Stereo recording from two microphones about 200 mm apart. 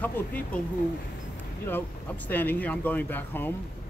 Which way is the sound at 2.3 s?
10° left (ahead or behind).